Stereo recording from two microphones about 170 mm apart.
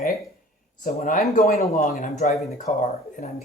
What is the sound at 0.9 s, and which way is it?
Speech, 50° left (ahead or behind).